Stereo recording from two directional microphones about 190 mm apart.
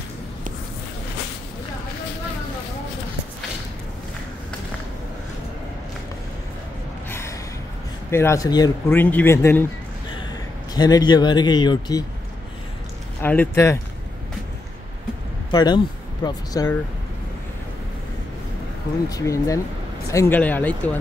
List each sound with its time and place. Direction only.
7.1 s gasp: 15° left (ahead or behind)
8.1 s speech: 15° left (ahead or behind)
10.7 s speech: 20° left (ahead or behind)
13.2 s speech: 10° left (ahead or behind)
15.5 s speech: 20° left (ahead or behind)
19.0 s speech: 15° left (ahead or behind)